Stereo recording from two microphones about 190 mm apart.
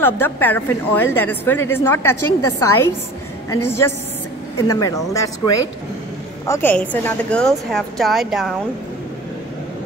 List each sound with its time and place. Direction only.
0.0 s a woman's voice: 10° left (ahead or behind)
6.4 s a woman's voice: 10° left (ahead or behind)